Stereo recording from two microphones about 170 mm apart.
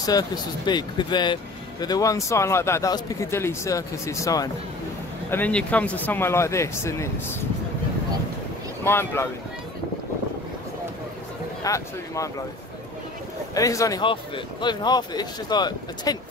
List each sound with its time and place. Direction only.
0.0 s speech: 20° left (ahead or behind)
5.3 s speech: 10° left (ahead or behind)
8.8 s speech: 15° left (ahead or behind)
11.6 s speech: 20° left (ahead or behind)
13.6 s speech: 20° left (ahead or behind)